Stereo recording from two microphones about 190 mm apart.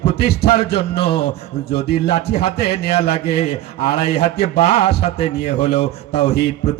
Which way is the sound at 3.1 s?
60° left (ahead or behind).